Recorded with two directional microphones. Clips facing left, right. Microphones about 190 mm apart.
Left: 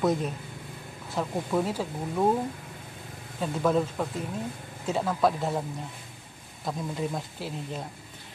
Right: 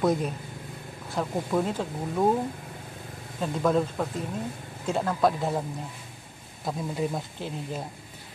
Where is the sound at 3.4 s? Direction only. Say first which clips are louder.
Right 1 dB; centre (ahead or behind).